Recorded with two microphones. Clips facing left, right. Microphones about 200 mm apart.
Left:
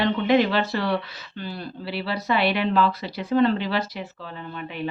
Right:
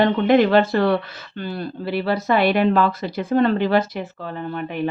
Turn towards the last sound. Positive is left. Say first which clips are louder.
# right 7 dB
turn(degrees=-50)  # may be behind; listen again after turning